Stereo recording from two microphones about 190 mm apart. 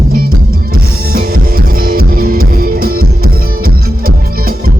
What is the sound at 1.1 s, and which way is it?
Music, 50° right (ahead or behind).